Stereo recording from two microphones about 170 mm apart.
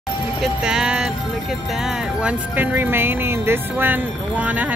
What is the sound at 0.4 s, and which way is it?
Speech, 5° right (ahead or behind).